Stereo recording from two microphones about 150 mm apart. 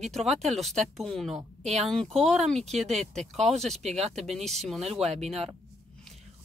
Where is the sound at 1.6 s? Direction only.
45° right (ahead or behind).